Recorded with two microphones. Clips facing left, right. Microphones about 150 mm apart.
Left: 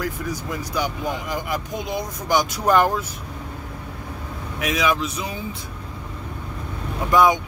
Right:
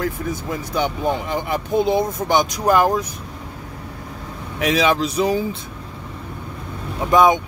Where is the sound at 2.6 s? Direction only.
10° right (ahead or behind).